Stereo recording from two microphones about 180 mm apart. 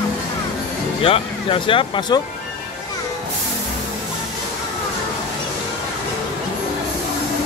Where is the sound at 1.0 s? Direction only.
30° left (ahead or behind).